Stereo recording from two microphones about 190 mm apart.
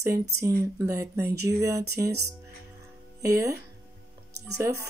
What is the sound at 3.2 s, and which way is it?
Speech, 15° right (ahead or behind).